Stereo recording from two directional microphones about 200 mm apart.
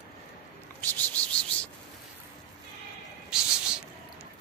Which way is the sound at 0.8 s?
10° left (ahead or behind).